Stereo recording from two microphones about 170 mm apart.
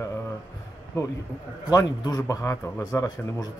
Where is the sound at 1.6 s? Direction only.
20° left (ahead or behind).